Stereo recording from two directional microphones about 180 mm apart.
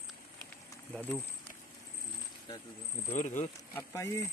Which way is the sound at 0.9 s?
10° left (ahead or behind).